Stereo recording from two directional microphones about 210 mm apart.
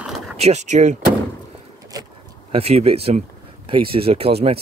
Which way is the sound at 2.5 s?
30° right (ahead or behind).